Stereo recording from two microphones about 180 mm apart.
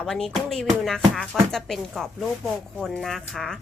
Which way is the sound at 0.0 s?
Centre (ahead or behind).